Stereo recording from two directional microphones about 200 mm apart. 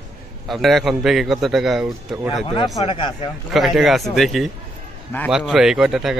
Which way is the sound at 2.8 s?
25° left (ahead or behind).